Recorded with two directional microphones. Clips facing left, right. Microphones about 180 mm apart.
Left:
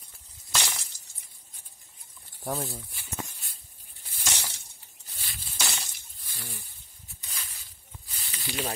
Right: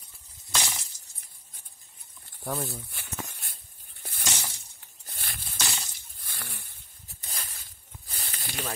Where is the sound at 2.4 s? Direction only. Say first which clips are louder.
Even; 10° left (ahead or behind).